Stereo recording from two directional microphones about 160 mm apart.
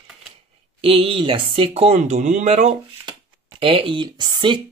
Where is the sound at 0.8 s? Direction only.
35° right (ahead or behind).